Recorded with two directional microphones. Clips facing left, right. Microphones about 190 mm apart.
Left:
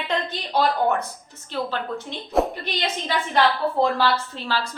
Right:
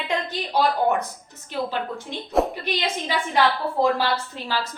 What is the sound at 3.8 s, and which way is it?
Speech, 15° right (ahead or behind).